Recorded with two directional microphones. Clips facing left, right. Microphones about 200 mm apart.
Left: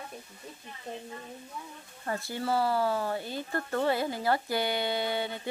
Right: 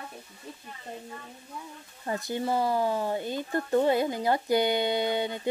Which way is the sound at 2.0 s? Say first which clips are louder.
Right 2 dB; 20° right (ahead or behind).